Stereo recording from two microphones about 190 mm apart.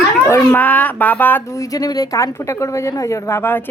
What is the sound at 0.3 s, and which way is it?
A woman's voice, 10° left (ahead or behind).